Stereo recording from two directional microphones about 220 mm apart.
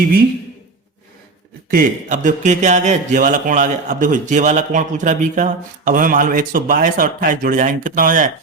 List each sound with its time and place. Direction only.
1.7 s speech: 35° right (ahead or behind)